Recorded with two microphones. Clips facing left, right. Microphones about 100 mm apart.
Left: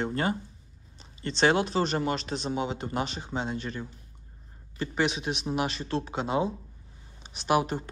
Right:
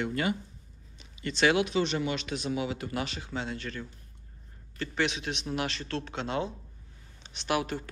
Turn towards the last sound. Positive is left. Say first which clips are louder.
# left 4 dB
turn(degrees=25)  # may be behind; listen again after turning